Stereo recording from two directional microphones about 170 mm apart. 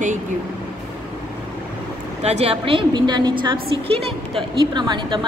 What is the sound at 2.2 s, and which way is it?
A woman's voice, 35° right (ahead or behind).